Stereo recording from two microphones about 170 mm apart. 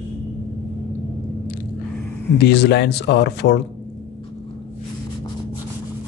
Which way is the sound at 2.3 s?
80° left.